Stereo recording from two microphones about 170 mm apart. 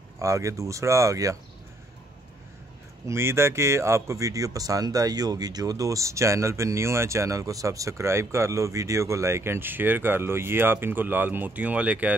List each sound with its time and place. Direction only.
0.2 s speech: 20° right (ahead or behind)
3.1 s speech: 15° right (ahead or behind)